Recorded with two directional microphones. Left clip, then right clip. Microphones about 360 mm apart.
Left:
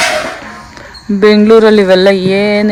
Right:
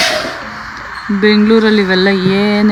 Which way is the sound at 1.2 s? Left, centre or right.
Left.